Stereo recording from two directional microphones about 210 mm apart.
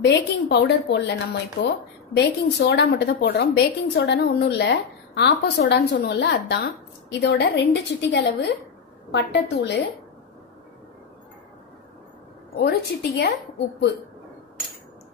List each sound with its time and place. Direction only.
0.0 s a woman's voice: 50° left (ahead or behind)
12.5 s a woman's voice: 50° left (ahead or behind)